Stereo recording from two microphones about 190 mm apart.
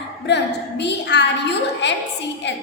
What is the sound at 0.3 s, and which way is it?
A woman's voice, 65° left (ahead or behind).